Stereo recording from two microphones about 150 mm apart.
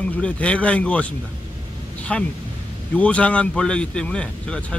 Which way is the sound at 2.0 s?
10° left (ahead or behind).